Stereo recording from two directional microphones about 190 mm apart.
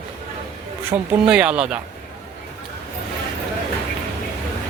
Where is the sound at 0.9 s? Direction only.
35° right (ahead or behind).